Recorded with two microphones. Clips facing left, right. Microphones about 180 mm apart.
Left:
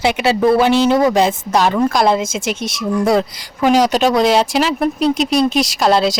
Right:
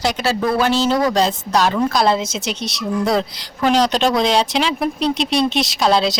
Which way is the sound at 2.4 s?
50° left (ahead or behind).